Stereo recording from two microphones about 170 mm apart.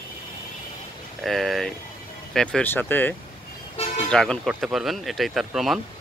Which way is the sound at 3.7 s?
35° left (ahead or behind).